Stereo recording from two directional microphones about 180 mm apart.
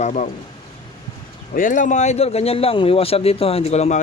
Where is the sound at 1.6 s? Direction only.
45° left (ahead or behind).